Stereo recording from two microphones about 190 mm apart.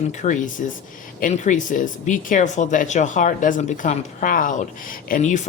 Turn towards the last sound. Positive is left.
turn(degrees=40)  # may be behind; listen again after turning